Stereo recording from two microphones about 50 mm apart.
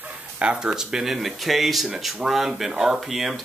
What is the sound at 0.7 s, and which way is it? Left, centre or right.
Speech, centre.